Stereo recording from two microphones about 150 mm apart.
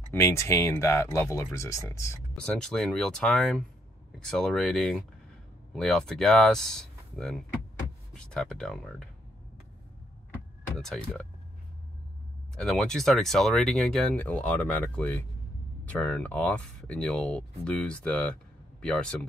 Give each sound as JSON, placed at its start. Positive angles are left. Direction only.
{"t": 0.1, "sound": "speech", "side_deg": 15}
{"t": 2.3, "sound": "speech", "side_deg": 5}
{"t": 10.8, "sound": "speech", "side_deg": 5}
{"t": 12.5, "sound": "speech", "side_deg": 5}